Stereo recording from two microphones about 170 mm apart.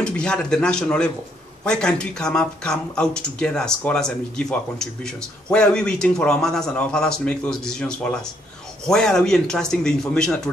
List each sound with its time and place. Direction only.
0.0 s speech: 5° left (ahead or behind)